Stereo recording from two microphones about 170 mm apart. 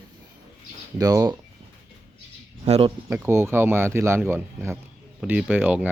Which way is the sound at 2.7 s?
35° right (ahead or behind).